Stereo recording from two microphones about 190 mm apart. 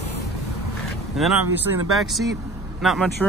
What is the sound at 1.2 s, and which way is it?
Speech, centre (ahead or behind).